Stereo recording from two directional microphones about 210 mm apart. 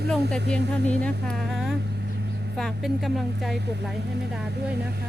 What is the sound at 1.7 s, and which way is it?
Vehicle, 55° right (ahead or behind).